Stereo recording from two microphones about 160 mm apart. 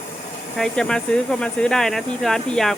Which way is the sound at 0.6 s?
5° left (ahead or behind).